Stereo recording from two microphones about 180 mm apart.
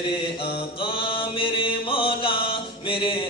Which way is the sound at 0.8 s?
30° left (ahead or behind).